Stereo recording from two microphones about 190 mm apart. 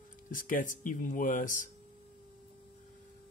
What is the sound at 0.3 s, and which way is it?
Speech, 45° left (ahead or behind).